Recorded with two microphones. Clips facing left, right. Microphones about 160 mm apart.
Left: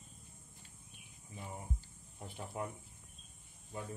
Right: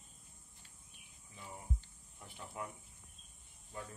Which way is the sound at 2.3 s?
45° left (ahead or behind).